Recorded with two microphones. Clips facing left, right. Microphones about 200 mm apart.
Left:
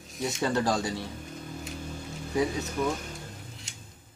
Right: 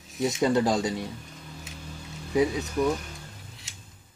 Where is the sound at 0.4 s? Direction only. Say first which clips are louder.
Right 4 dB; 15° right (ahead or behind).